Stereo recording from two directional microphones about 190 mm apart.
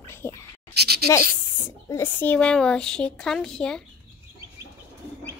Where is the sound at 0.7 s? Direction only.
55° right (ahead or behind).